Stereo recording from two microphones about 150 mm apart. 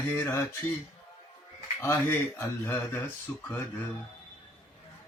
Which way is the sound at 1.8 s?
15° left (ahead or behind).